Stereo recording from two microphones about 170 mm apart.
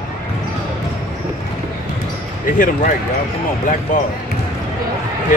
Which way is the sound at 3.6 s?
50° left (ahead or behind).